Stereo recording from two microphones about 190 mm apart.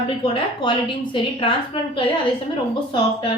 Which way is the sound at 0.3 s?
25° left (ahead or behind).